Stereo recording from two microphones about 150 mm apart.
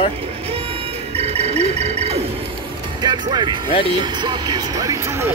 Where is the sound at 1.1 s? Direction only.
45° right (ahead or behind).